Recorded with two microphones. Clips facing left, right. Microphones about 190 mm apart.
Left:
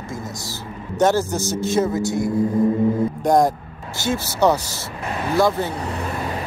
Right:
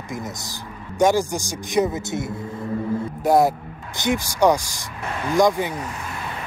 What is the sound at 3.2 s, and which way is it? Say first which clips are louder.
Speech: right 1 dB; 5° right (ahead or behind).